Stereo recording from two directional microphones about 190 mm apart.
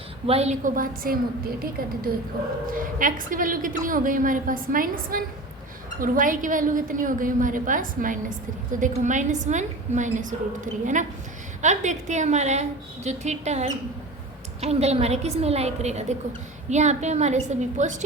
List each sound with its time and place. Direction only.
0.3 s a woman's voice: 35° right (ahead or behind)
11.6 s a woman's voice: 40° right (ahead or behind)